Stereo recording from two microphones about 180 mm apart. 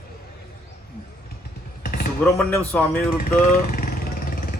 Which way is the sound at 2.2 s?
10° left (ahead or behind).